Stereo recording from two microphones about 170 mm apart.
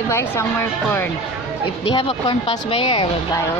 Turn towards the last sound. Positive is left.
turn(degrees=30)  # may be behind; listen again after turning